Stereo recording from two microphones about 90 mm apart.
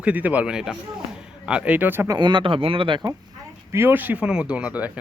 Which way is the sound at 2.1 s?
55° right (ahead or behind).